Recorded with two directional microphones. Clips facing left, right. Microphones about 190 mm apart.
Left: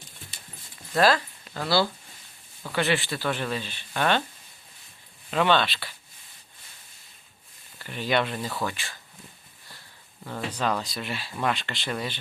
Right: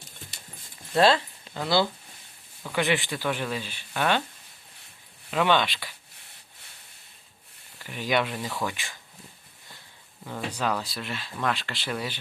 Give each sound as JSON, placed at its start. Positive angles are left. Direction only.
{"t": 0.9, "sound": "speech", "side_deg": -25}
{"t": 5.3, "sound": "speech", "side_deg": -10}
{"t": 7.9, "sound": "speech", "side_deg": -10}
{"t": 8.6, "sound": "speech", "side_deg": -15}
{"t": 10.2, "sound": "speech", "side_deg": -10}